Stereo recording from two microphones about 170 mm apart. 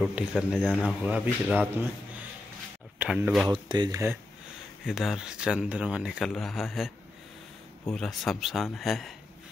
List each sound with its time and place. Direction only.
0.0 s a man's voice: 5° right (ahead or behind)
3.0 s speech: 5° right (ahead or behind)
3.4 s speech: 25° right (ahead or behind)
4.8 s speech: centre (ahead or behind)
7.9 s speech: centre (ahead or behind)